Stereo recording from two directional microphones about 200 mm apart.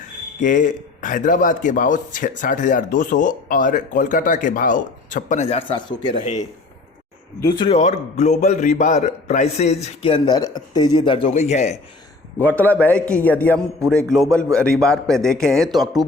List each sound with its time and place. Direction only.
0.3 s a man's voice: 40° left (ahead or behind)
7.4 s a man's voice: 25° left (ahead or behind)
12.4 s a man's voice: 10° left (ahead or behind)